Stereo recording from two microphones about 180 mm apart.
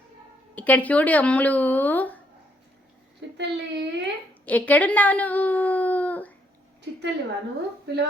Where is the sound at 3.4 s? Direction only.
70° right (ahead or behind).